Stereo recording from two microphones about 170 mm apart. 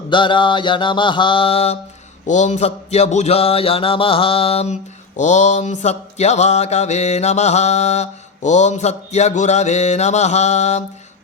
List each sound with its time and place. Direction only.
0.1 s mantra: 30° left (ahead or behind)